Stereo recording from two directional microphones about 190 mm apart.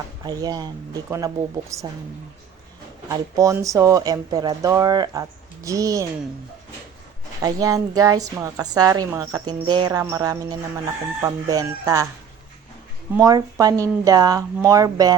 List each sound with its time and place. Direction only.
0.3 s a woman's voice: 20° right (ahead or behind)
3.1 s a woman's voice: 20° right (ahead or behind)
7.4 s a woman's voice: 20° right (ahead or behind)
13.1 s a woman's voice: 20° right (ahead or behind)